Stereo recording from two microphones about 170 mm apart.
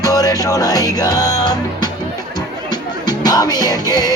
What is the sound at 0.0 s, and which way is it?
Music, 20° left (ahead or behind).